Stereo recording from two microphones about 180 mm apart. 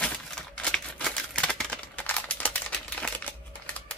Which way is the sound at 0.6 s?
5° left (ahead or behind).